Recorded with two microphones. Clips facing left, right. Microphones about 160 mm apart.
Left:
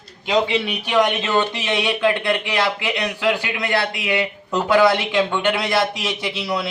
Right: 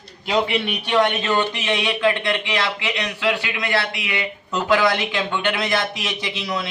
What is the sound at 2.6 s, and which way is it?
Speech, 10° left (ahead or behind).